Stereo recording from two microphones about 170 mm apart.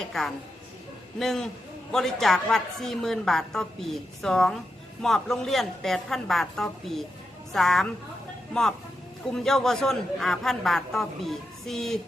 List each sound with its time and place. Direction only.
0.0 s a woman's voice: centre (ahead or behind)
9.3 s a woman's voice: centre (ahead or behind)